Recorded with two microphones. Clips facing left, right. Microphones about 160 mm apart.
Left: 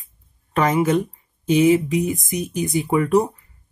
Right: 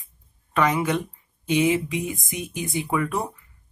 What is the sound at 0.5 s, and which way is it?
Speech, 40° left (ahead or behind).